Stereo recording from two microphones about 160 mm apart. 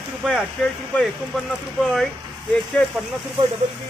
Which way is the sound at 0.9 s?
5° left (ahead or behind).